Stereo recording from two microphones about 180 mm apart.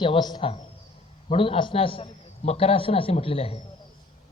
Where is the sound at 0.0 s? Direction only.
25° left (ahead or behind).